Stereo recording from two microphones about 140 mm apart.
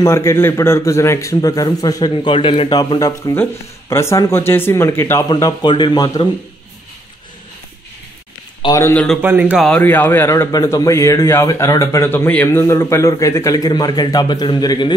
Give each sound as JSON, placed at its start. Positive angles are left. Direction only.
{"t": 0.0, "sound": "a man's voice", "side_deg": 20}
{"t": 2.3, "sound": "a man's voice", "side_deg": 40}
{"t": 2.7, "sound": "a man's voice", "side_deg": 30}
{"t": 5.4, "sound": "a man's voice", "side_deg": 30}
{"t": 8.7, "sound": "speech", "side_deg": 20}
{"t": 9.2, "sound": "speech", "side_deg": -10}
{"t": 9.8, "sound": "a man's voice", "side_deg": 15}